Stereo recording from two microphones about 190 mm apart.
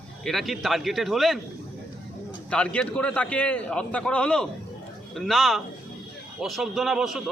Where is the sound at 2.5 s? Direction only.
5° left (ahead or behind).